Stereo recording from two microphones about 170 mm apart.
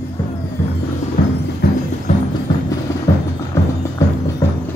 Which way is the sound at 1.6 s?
55° left (ahead or behind).